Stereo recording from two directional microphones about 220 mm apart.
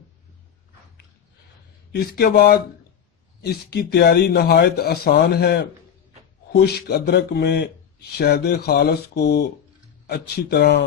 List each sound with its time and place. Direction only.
2.0 s speech: 45° left (ahead or behind)